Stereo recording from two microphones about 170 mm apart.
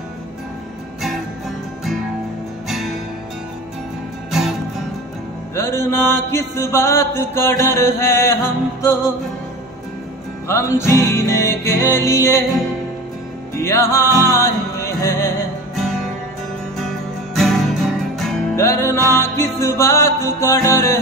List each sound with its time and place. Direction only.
4.3 s music: centre (ahead or behind)
5.6 s mantra: 15° left (ahead or behind)
10.5 s mantra: 15° left (ahead or behind)
13.6 s mantra: 15° left (ahead or behind)
14.2 s music: 15° left (ahead or behind)
16.8 s music: centre (ahead or behind)
18.6 s mantra: 15° left (ahead or behind)